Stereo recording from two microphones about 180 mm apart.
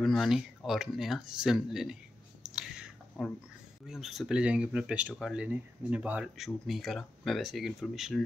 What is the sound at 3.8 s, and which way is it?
Speech, centre (ahead or behind).